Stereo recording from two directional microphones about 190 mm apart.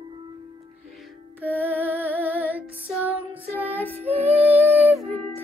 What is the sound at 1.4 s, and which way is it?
Music, 10° right (ahead or behind).